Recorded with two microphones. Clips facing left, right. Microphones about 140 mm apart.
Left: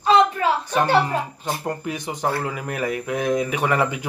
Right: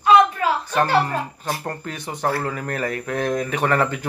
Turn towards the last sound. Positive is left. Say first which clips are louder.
# right 1 dB
turn(degrees=10)  # may be behind; listen again after turning